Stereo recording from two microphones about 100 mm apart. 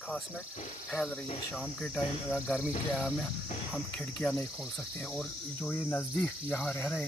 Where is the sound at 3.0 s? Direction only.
5° left (ahead or behind).